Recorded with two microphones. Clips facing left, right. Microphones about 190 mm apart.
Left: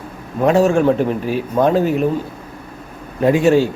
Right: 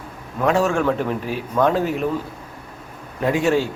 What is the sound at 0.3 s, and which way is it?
A man's voice, 30° left (ahead or behind).